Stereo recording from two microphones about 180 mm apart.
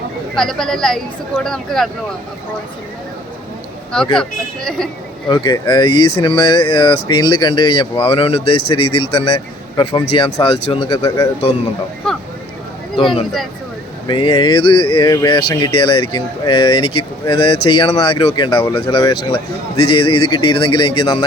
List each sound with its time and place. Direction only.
0.3 s speech: 5° left (ahead or behind)
3.9 s speech: 5° left (ahead or behind)
5.3 s speech: 25° left (ahead or behind)
14.1 s speech: 25° left (ahead or behind)